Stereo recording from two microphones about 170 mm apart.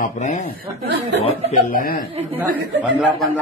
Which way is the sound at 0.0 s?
45° left (ahead or behind).